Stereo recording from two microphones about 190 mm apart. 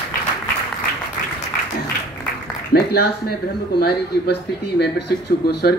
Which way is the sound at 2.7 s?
55° left (ahead or behind).